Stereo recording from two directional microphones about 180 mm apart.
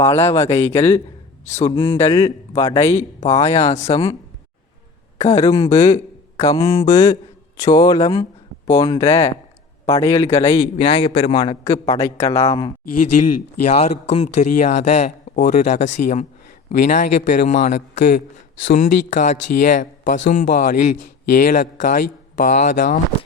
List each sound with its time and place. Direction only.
0.0 s speech: 15° left (ahead or behind)
1.5 s speech: 35° left (ahead or behind)
1.8 s speech: 15° left (ahead or behind)
3.7 s speech: 40° left (ahead or behind)
3.9 s speech: 20° left (ahead or behind)
5.2 s a man's voice: 20° left (ahead or behind)
13.7 s speech: 35° left (ahead or behind)